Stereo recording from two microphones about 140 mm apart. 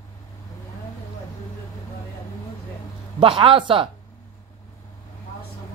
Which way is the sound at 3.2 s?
40° right (ahead or behind).